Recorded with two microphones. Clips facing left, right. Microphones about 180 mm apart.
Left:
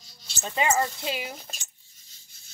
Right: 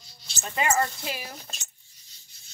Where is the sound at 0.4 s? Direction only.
20° left (ahead or behind).